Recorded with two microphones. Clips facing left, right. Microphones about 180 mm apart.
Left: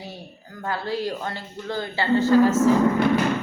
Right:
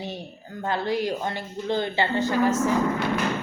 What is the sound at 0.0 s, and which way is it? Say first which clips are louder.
Speech: right 4 dB; 25° right (ahead or behind).